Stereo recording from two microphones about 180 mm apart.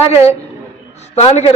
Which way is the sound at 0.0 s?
35° left (ahead or behind).